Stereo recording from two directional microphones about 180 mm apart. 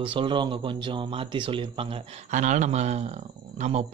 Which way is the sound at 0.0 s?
30° right (ahead or behind).